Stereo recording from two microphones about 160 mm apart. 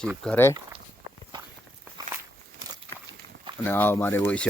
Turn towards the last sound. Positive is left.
turn(degrees=10)  # may be behind; listen again after turning